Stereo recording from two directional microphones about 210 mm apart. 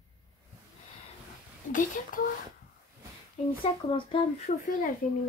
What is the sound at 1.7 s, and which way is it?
Speech, 40° left (ahead or behind).